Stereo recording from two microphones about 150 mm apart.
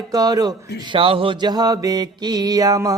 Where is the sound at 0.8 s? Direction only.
35° right (ahead or behind).